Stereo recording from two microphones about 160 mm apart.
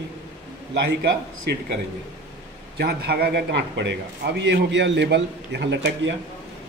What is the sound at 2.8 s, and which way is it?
A man's voice, 80° right.